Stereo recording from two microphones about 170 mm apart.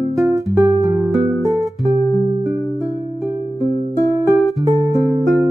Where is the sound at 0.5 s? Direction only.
20° right (ahead or behind).